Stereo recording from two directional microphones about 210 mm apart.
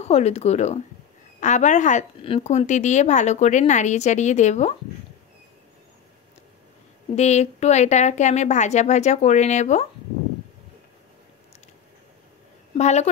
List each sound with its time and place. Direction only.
0.0 s a woman's voice: 30° left (ahead or behind)
7.2 s a woman's voice: 30° left (ahead or behind)
12.7 s a woman's voice: 30° left (ahead or behind)